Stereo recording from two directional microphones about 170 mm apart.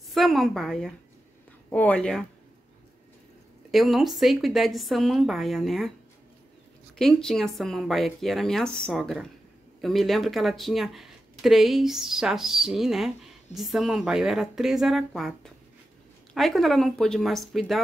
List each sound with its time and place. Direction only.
0.1 s speech: centre (ahead or behind)
3.7 s speech: centre (ahead or behind)
7.0 s speech: 5° left (ahead or behind)